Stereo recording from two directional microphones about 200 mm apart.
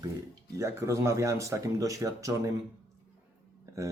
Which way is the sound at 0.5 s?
15° right (ahead or behind).